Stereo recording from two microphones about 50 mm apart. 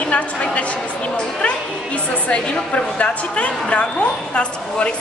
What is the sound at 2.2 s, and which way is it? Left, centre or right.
A woman's voice, left.